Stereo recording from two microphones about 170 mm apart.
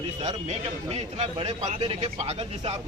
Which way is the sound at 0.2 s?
40° right (ahead or behind).